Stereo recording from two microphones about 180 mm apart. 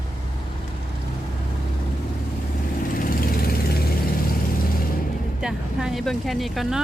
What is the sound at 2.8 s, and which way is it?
Vehicle, 50° left (ahead or behind).